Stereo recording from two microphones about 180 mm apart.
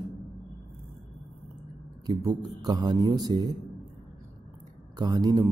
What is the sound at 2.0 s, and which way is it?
A man's voice, 20° right (ahead or behind).